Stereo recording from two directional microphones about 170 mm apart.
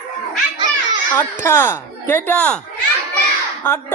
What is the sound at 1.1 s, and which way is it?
Speech, 10° left (ahead or behind).